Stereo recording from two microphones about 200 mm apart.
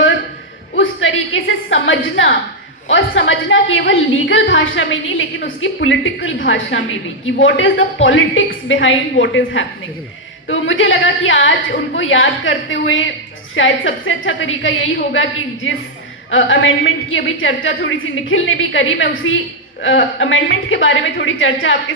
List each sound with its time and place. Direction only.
0.8 s a woman's voice: 75° left (ahead or behind)